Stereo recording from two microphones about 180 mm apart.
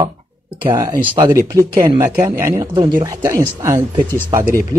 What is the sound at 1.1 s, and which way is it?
Speech, 20° right (ahead or behind).